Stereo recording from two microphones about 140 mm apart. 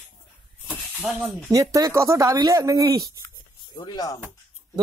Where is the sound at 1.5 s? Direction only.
25° right (ahead or behind).